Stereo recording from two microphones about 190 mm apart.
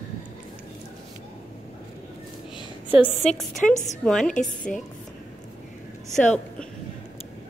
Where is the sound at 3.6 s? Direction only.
Centre (ahead or behind).